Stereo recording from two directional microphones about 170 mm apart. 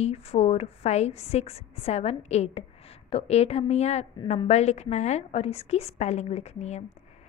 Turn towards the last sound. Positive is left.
turn(degrees=40)  # may be behind; listen again after turning